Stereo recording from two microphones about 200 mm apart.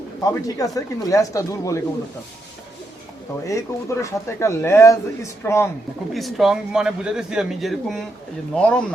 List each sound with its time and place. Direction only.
0.2 s speech: 20° left (ahead or behind)
3.4 s speech: 15° left (ahead or behind)
6.1 s a man's voice: centre (ahead or behind)